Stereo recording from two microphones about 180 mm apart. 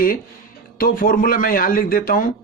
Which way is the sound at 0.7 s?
55° left (ahead or behind).